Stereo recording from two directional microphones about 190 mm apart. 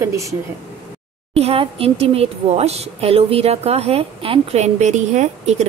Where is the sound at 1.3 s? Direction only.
30° right (ahead or behind).